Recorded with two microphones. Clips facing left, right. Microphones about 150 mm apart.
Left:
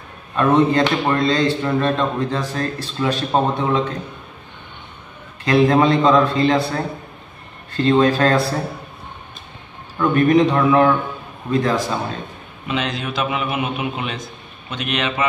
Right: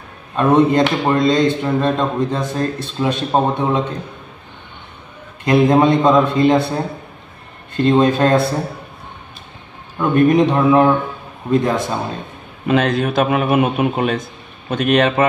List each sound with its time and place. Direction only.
0.4 s speech: 20° right (ahead or behind)
5.4 s speech: 20° right (ahead or behind)
9.9 s speech: 20° right (ahead or behind)
12.6 s a man's voice: 50° right (ahead or behind)